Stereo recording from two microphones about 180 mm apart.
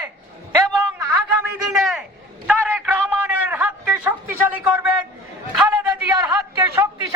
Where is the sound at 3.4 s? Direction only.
10° right (ahead or behind).